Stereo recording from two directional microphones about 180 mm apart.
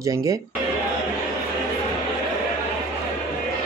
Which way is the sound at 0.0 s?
20° right (ahead or behind).